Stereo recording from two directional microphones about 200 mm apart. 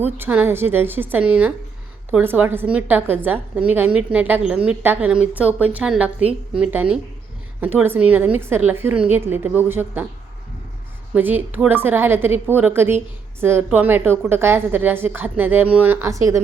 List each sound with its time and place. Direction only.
0.0 s a woman's voice: 10° right (ahead or behind)
11.1 s a woman's voice: 10° right (ahead or behind)